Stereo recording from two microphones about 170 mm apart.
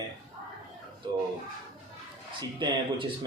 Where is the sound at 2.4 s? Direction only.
25° right (ahead or behind).